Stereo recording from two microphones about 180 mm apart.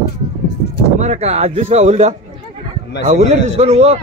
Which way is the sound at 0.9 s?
40° right (ahead or behind).